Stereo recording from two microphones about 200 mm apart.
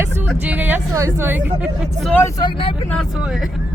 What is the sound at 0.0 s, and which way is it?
Speech, 10° right (ahead or behind).